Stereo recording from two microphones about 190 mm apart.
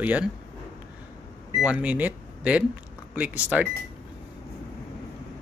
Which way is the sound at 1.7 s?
5° right (ahead or behind).